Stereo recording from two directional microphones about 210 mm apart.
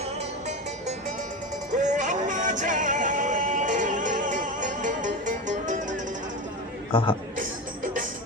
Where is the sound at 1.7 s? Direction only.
35° right (ahead or behind).